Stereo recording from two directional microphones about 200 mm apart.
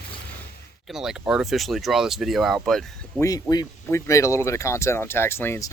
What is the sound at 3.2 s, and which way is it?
Speech, 15° left (ahead or behind).